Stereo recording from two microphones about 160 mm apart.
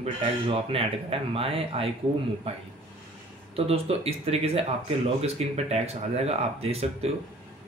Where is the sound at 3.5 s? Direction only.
40° right (ahead or behind).